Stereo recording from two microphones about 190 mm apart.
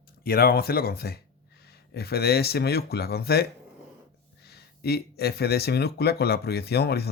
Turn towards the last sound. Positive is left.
turn(degrees=55)  # may be behind; listen again after turning